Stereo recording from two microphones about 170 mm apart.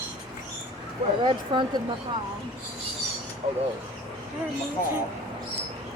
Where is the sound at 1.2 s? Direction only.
30° right (ahead or behind).